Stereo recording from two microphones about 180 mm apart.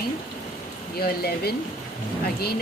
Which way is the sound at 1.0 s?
60° left (ahead or behind).